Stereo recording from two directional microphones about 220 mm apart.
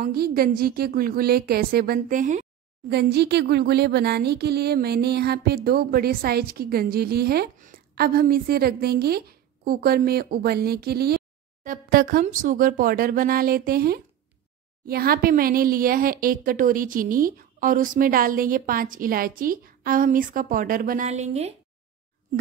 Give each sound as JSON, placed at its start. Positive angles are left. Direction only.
{"t": 0.0, "sound": "speech", "side_deg": -45}
{"t": 2.9, "sound": "a woman's voice", "side_deg": -45}